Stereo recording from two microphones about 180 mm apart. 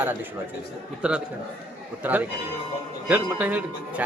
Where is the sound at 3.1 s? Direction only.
10° right (ahead or behind).